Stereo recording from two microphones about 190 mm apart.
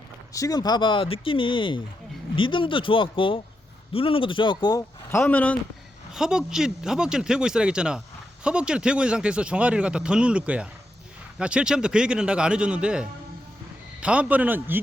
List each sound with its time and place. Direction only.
0.3 s speech: 20° left (ahead or behind)
5.2 s speech: 5° left (ahead or behind)
6.1 s a man's voice: 5° right (ahead or behind)